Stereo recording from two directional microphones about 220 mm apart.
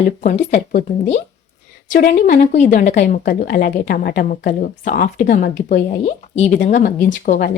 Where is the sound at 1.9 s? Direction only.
45° left (ahead or behind).